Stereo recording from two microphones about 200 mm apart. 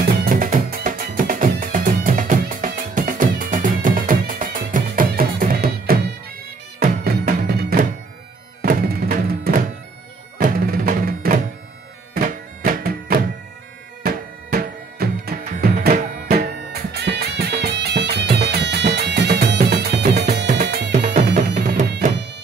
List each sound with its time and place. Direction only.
0.2 s music: 45° right (ahead or behind)